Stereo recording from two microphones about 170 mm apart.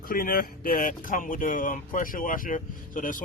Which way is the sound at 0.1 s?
55° left (ahead or behind).